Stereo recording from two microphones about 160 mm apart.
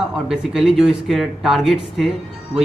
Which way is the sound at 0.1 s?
5° right (ahead or behind).